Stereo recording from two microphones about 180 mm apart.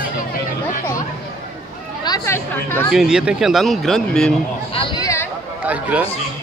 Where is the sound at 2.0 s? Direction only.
15° left (ahead or behind).